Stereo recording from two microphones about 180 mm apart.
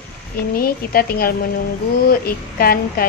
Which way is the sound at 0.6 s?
55° left (ahead or behind).